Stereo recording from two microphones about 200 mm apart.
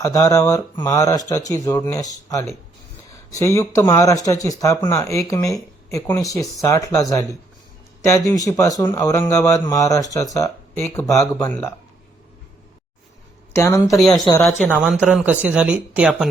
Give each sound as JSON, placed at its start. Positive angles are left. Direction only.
{"t": 0.0, "sound": "a man's voice", "side_deg": 15}
{"t": 13.5, "sound": "a man's voice", "side_deg": 15}
{"t": 14.7, "sound": "speech", "side_deg": -5}